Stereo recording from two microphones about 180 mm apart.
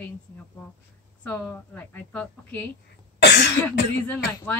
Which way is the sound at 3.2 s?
70° left (ahead or behind).